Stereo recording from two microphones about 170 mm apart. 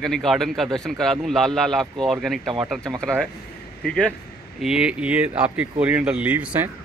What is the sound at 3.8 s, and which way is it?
A man's voice, 5° left (ahead or behind).